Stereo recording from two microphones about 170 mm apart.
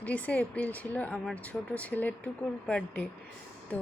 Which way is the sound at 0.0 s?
10° left (ahead or behind).